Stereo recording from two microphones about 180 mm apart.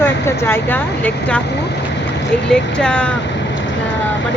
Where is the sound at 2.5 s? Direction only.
5° left (ahead or behind).